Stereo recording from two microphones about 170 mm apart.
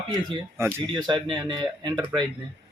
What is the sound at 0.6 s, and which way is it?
Speech, 25° right (ahead or behind).